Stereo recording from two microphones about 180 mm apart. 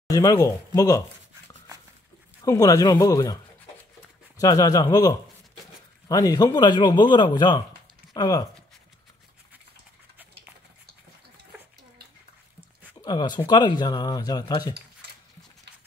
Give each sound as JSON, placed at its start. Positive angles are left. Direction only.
{"t": 0.1, "sound": "speech", "side_deg": 20}
{"t": 2.4, "sound": "speech", "side_deg": 20}
{"t": 4.4, "sound": "speech", "side_deg": 20}
{"t": 13.0, "sound": "speech", "side_deg": 25}